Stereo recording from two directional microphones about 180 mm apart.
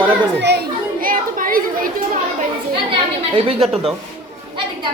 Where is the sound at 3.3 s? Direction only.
30° right (ahead or behind).